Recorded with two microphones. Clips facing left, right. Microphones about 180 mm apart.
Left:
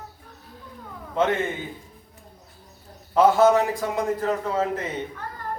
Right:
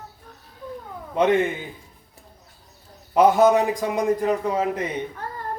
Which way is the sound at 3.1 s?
15° right (ahead or behind).